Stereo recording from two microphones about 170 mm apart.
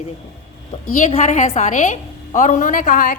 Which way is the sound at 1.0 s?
45° left (ahead or behind).